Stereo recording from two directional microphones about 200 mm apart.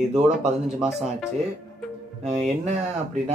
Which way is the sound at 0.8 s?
Centre (ahead or behind).